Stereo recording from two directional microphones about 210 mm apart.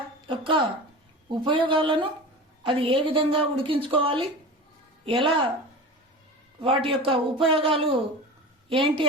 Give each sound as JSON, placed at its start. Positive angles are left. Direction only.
{"t": 0.3, "sound": "a woman's voice", "side_deg": -25}
{"t": 6.6, "sound": "a woman's voice", "side_deg": -25}